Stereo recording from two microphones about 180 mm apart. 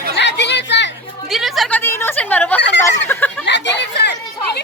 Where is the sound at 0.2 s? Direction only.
75° left (ahead or behind).